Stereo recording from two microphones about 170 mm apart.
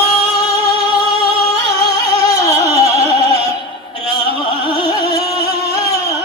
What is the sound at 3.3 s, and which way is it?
Music, 35° right (ahead or behind).